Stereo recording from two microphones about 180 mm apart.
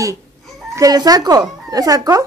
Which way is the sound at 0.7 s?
20° right (ahead or behind).